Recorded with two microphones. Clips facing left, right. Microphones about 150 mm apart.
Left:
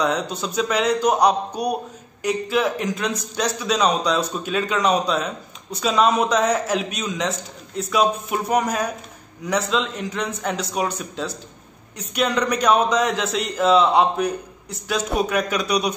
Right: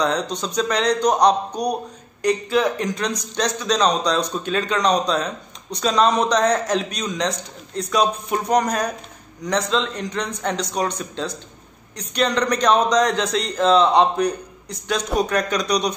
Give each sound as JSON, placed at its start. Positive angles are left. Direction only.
{"t": 0.0, "sound": "a man's voice", "side_deg": 5}